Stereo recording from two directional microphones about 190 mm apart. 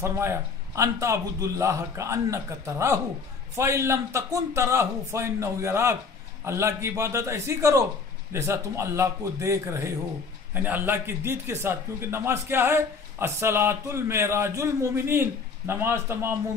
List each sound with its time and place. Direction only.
0.0 s a man's voice: 15° right (ahead or behind)